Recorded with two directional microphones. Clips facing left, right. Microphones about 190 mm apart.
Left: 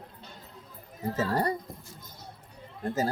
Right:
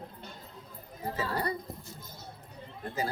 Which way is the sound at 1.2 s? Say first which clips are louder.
Left 5 dB; 45° left (ahead or behind).